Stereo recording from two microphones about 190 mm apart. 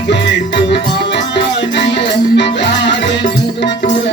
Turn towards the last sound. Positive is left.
turn(degrees=65)  # may be behind; listen again after turning